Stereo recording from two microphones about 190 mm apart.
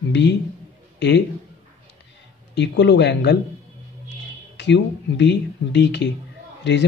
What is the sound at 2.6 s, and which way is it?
Speech, 65° left (ahead or behind).